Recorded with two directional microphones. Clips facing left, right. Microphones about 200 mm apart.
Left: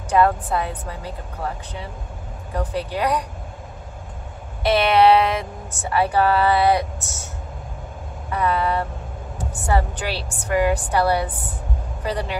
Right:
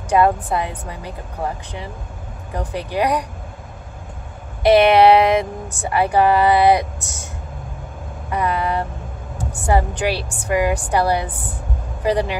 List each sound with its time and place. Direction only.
0.1 s speech: 15° right (ahead or behind)
2.7 s speech: 15° right (ahead or behind)
4.6 s speech: 15° right (ahead or behind)
8.3 s vehicle: 15° right (ahead or behind)
9.7 s speech: 15° right (ahead or behind)